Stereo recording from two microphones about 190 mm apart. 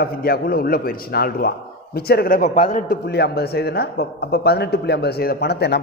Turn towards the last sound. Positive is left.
turn(degrees=60)  # may be behind; listen again after turning